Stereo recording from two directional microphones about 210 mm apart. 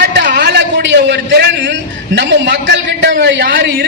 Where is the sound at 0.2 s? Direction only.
50° right (ahead or behind).